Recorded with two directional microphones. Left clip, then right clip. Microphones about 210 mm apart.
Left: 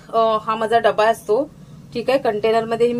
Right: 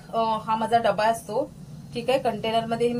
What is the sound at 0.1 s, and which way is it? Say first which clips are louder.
A woman's voice: left 7 dB; 45° left (ahead or behind).